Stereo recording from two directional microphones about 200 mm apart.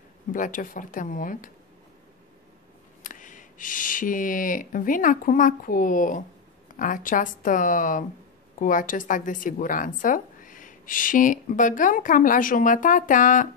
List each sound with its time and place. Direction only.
0.3 s a woman's voice: 40° left (ahead or behind)
3.0 s a woman's voice: 40° left (ahead or behind)